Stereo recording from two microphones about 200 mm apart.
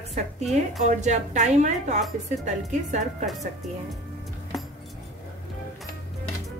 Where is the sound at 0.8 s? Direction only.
35° right (ahead or behind).